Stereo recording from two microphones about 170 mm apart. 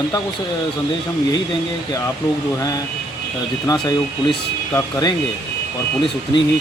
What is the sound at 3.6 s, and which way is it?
Speech, 20° left (ahead or behind).